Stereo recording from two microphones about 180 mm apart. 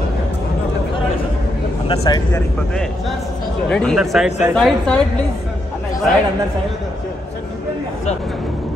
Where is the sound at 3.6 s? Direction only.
5° left (ahead or behind).